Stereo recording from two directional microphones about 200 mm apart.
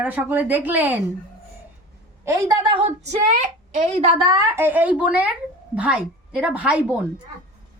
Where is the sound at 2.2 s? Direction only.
15° right (ahead or behind).